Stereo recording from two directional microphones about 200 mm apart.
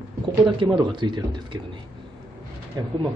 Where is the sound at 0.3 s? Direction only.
20° right (ahead or behind).